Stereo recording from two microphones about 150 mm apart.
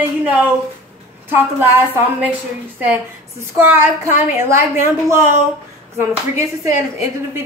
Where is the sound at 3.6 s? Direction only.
15° right (ahead or behind).